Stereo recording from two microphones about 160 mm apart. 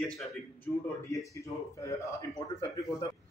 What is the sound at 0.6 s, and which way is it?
A man's voice, 20° left (ahead or behind).